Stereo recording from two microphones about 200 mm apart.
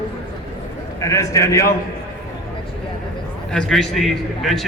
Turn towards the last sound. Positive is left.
turn(degrees=0)  # may be behind; listen again after turning